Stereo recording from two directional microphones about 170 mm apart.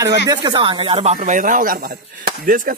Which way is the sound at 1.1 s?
50° right (ahead or behind).